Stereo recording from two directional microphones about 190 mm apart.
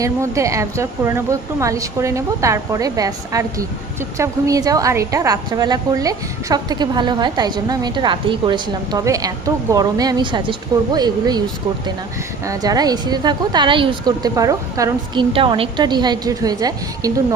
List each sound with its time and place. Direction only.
0.0 s a woman's voice: 15° right (ahead or behind)
12.5 s a woman's voice: 20° right (ahead or behind)